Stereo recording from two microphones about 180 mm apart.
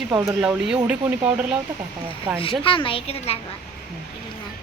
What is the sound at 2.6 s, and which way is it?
Speech, 30° left (ahead or behind).